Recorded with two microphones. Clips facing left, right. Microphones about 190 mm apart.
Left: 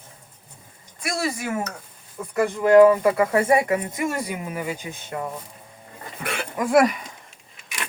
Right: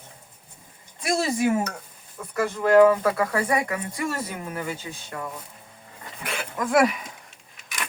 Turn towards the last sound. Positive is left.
turn(degrees=0)  # may be behind; listen again after turning